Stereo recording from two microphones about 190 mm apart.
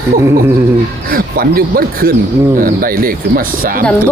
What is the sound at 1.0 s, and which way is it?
Speech, 50° right (ahead or behind).